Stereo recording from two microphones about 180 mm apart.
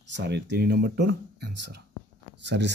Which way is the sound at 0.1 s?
75° right (ahead or behind).